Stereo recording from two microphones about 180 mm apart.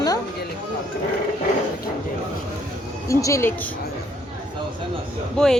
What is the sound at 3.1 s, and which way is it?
Speech, 15° left (ahead or behind).